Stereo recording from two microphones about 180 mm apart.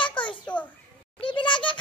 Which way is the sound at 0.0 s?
25° left (ahead or behind).